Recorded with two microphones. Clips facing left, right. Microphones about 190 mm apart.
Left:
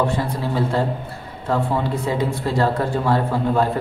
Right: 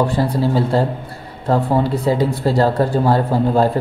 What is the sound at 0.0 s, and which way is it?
Speech, 35° right (ahead or behind).